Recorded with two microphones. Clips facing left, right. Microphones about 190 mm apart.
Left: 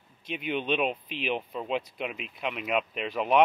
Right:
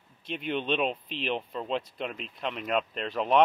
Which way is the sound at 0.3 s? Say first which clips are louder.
Even; 5° left (ahead or behind).